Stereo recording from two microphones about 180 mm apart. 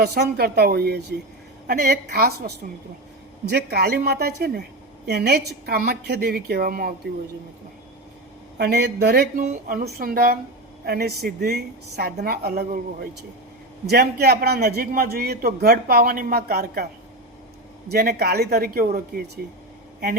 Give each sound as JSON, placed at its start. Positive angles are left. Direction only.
{"t": 0.0, "sound": "a man's voice", "side_deg": -60}
{"t": 3.5, "sound": "a man's voice", "side_deg": -60}
{"t": 8.5, "sound": "a man's voice", "side_deg": -65}
{"t": 9.4, "sound": "a woman's voice", "side_deg": -45}
{"t": 17.9, "sound": "a man's voice", "side_deg": -60}